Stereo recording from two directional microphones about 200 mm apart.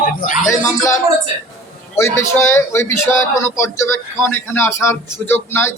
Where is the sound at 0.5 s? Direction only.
15° left (ahead or behind).